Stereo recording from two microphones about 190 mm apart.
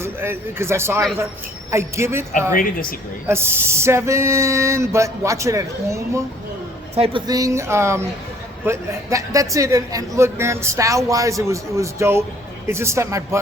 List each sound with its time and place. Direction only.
0.0 s a man's voice: 15° right (ahead or behind)
2.6 s speech: 45° left (ahead or behind)
3.2 s a man's voice: 10° right (ahead or behind)
6.9 s a man's voice: 30° right (ahead or behind)